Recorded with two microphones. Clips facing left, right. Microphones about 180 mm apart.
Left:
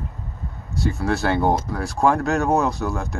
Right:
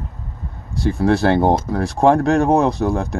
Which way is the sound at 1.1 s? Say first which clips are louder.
Right 6 dB; 30° right (ahead or behind).